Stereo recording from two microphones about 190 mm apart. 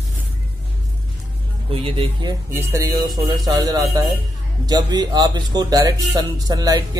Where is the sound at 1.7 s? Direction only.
30° right (ahead or behind).